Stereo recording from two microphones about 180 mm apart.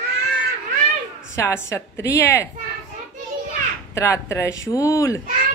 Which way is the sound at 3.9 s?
15° left (ahead or behind).